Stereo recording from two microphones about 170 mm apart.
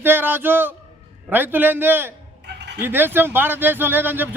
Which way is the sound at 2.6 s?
90° right.